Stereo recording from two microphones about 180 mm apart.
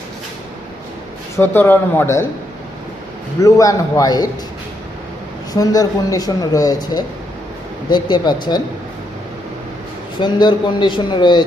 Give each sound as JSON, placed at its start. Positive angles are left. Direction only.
{"t": 1.4, "sound": "speech", "side_deg": 10}
{"t": 3.4, "sound": "speech", "side_deg": 20}
{"t": 5.5, "sound": "speech", "side_deg": 20}
{"t": 10.2, "sound": "speech", "side_deg": 25}